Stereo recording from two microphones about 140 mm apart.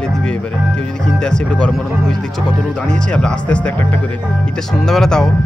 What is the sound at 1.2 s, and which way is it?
Speech, 5° left (ahead or behind).